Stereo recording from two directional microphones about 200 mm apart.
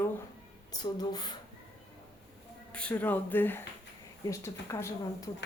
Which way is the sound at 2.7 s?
5° left (ahead or behind).